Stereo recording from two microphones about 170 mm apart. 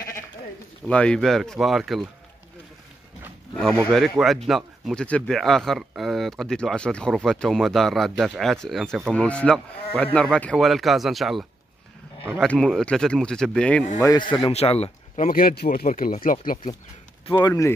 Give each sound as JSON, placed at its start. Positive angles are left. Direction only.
{"t": 0.8, "sound": "speech", "side_deg": 5}
{"t": 3.5, "sound": "speech", "side_deg": 5}
{"t": 13.9, "sound": "speech", "side_deg": 20}
{"t": 15.2, "sound": "speech", "side_deg": 60}
{"t": 17.4, "sound": "speech", "side_deg": 15}